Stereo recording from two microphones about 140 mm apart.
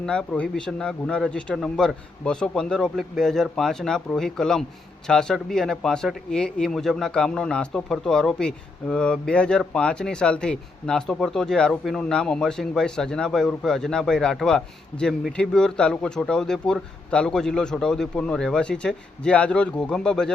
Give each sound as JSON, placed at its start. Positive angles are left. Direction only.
{"t": 0.0, "sound": "speech", "side_deg": 5}